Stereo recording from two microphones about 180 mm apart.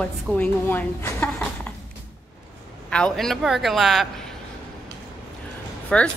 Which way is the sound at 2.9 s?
5° left (ahead or behind).